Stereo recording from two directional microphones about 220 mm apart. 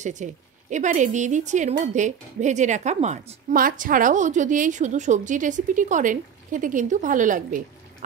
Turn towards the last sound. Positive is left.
turn(degrees=-35)  # may be behind; listen again after turning